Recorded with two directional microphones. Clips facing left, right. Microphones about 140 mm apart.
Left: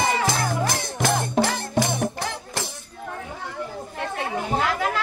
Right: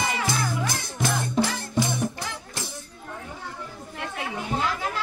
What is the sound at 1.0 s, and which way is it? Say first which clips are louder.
Music: left 3 dB; 75° left (ahead or behind).